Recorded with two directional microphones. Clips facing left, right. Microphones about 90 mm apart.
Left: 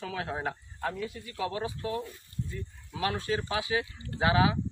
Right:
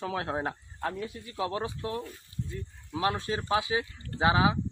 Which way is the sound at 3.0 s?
25° right (ahead or behind).